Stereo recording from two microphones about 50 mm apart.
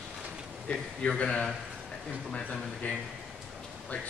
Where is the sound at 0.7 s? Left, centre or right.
Left.